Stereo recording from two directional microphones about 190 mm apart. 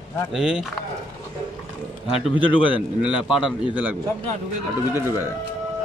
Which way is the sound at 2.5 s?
25° left (ahead or behind).